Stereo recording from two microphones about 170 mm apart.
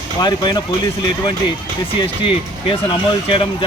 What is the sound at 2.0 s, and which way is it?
Speech, 30° left (ahead or behind).